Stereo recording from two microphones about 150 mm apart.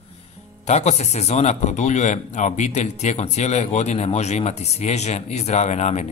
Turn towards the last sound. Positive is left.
turn(degrees=50)  # may be behind; listen again after turning